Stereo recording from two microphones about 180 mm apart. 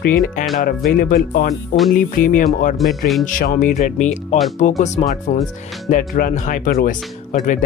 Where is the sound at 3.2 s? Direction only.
50° left (ahead or behind).